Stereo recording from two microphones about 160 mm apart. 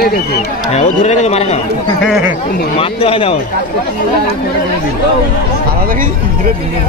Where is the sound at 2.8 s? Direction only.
35° left (ahead or behind).